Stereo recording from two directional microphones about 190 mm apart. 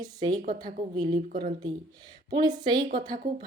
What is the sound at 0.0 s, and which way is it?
Speech, 20° right (ahead or behind).